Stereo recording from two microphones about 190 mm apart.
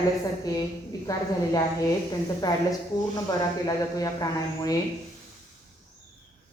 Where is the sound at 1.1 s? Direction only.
15° left (ahead or behind).